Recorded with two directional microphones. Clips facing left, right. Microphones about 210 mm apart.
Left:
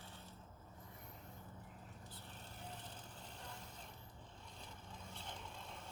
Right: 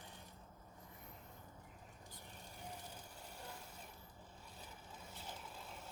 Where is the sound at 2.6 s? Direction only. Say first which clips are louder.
Right 1 dB; 10° right (ahead or behind).